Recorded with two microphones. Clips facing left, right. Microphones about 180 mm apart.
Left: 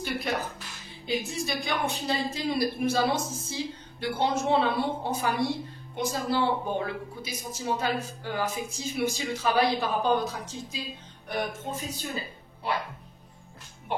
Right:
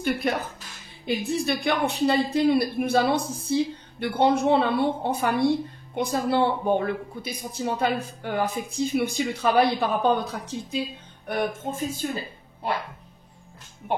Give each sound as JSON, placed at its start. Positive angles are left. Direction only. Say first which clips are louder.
{"t": 0.0, "sound": "a woman's voice", "louder": "right 5 dB", "side_deg": -50}